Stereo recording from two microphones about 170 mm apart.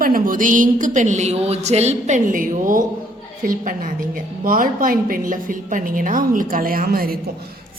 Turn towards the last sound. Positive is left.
turn(degrees=-60)  # may be behind; listen again after turning